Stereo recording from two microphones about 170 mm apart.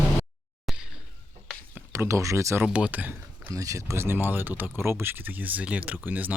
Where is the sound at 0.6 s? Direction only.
5° right (ahead or behind).